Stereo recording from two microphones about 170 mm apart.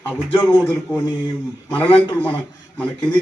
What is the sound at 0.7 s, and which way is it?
Speech, 5° left (ahead or behind).